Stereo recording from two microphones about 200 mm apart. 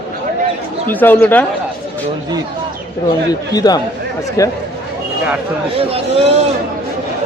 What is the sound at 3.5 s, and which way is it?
A man's voice, 20° left (ahead or behind).